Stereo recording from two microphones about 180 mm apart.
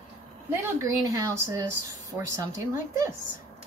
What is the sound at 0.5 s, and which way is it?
A woman's voice, 15° right (ahead or behind).